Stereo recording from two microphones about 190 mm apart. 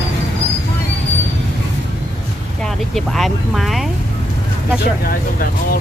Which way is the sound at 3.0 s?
Centre (ahead or behind).